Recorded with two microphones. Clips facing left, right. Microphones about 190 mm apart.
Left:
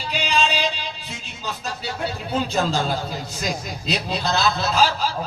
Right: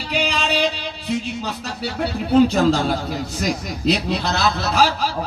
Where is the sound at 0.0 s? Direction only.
65° right (ahead or behind).